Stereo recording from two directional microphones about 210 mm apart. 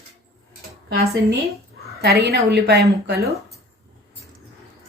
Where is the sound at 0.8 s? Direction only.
50° right (ahead or behind).